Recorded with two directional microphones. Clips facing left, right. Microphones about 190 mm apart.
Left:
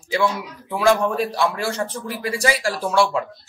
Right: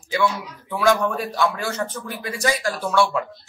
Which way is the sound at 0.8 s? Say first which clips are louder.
Left 2 dB; 30° left (ahead or behind).